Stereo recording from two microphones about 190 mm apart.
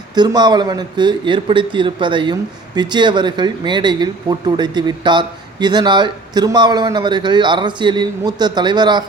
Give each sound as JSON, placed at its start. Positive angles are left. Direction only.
{"t": 0.1, "sound": "speech", "side_deg": -20}